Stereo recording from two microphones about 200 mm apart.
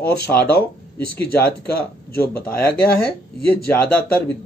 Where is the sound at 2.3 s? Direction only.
10° left (ahead or behind).